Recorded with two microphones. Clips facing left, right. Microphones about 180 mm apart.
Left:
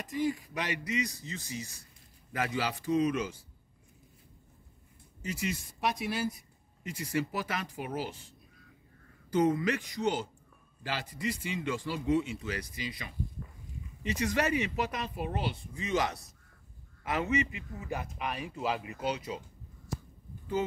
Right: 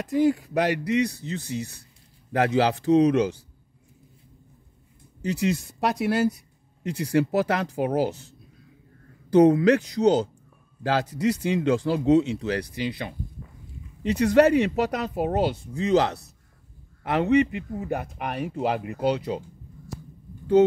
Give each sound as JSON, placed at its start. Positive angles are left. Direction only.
{"t": 0.0, "sound": "a man's voice", "side_deg": -75}
{"t": 5.2, "sound": "speech", "side_deg": -70}
{"t": 9.3, "sound": "a man's voice", "side_deg": -70}